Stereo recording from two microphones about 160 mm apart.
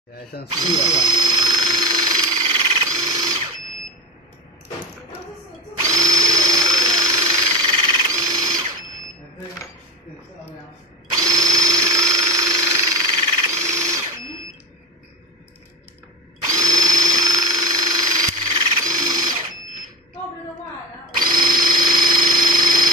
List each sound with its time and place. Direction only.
0.6 s a sound: 25° right (ahead or behind)
5.8 s drill: 20° right (ahead or behind)
11.1 s drill: 20° right (ahead or behind)
16.4 s drill: 20° right (ahead or behind)
21.2 s drill: 25° right (ahead or behind)
21.8 s a sound: 25° right (ahead or behind)